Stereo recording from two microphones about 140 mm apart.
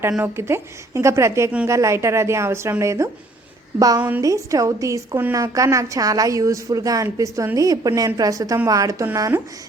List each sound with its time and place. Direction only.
0.2 s a woman's voice: 20° right (ahead or behind)